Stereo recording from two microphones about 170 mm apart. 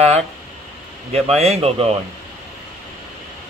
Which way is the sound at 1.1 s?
40° right (ahead or behind).